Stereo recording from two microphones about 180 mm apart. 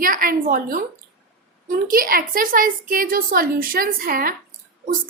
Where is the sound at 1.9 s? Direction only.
55° right (ahead or behind).